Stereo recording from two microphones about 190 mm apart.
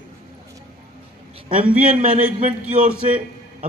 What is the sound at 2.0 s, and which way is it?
Speech, 45° right (ahead or behind).